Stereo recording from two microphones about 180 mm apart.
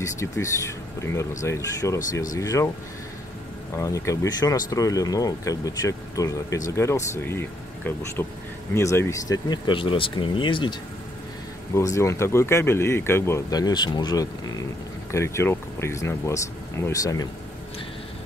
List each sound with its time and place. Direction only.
0.0 s speech: 15° left (ahead or behind)
3.7 s speech: 15° left (ahead or behind)
11.7 s speech: 15° left (ahead or behind)